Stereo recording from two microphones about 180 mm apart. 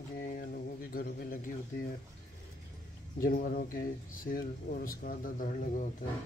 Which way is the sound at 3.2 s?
50° left (ahead or behind).